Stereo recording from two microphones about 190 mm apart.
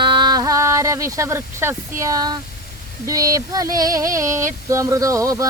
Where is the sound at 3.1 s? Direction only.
20° right (ahead or behind).